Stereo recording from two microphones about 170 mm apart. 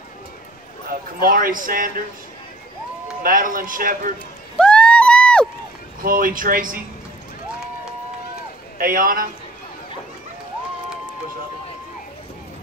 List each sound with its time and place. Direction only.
0.8 s speech: 55° right (ahead or behind)
3.2 s speech: 55° right (ahead or behind)
4.6 s a sound: 5° left (ahead or behind)
6.0 s speech: 55° right (ahead or behind)
8.7 s speech: 55° right (ahead or behind)